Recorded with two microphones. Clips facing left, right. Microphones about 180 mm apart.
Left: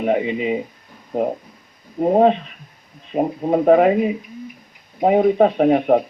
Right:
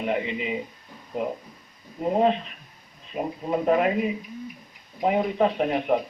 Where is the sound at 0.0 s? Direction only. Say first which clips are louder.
Left 8 dB; 55° left (ahead or behind).